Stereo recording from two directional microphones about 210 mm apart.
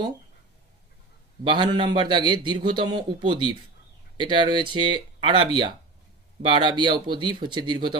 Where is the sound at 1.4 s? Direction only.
25° right (ahead or behind).